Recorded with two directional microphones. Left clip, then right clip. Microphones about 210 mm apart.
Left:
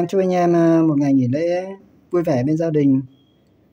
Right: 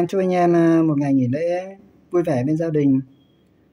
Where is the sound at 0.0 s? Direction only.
Centre (ahead or behind).